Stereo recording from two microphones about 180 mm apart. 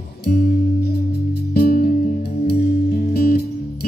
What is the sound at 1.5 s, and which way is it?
Music, 60° left (ahead or behind).